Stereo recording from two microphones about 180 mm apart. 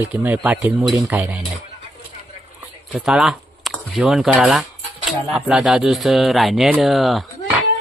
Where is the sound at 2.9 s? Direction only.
5° right (ahead or behind).